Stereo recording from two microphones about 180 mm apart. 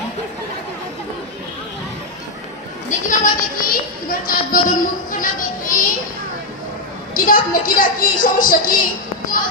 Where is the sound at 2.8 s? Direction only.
45° left (ahead or behind).